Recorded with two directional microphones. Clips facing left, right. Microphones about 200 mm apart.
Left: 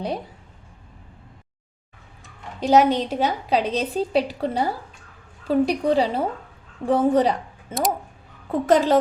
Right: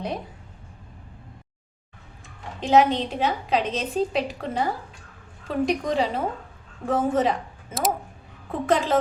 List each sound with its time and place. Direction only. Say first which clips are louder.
2.6 s a woman's voice: left 2 dB; 40° left (ahead or behind)
7.7 s speech: left 2 dB; centre (ahead or behind)
8.6 s a woman's voice: left 4 dB; 40° left (ahead or behind)